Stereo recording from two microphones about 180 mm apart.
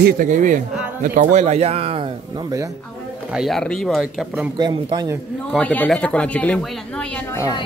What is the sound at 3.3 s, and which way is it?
Speech, centre (ahead or behind).